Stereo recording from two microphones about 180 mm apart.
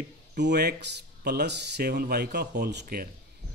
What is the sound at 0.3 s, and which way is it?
Speech, 65° right (ahead or behind).